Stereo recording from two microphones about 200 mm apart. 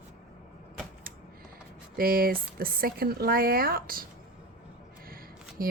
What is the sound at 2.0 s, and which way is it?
Speech, 45° right (ahead or behind).